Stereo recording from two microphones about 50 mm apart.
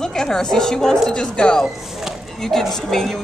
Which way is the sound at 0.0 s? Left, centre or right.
Centre.